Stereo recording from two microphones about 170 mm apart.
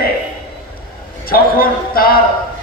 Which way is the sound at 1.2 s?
60° left (ahead or behind).